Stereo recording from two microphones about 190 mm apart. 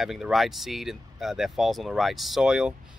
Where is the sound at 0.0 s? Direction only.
Centre (ahead or behind).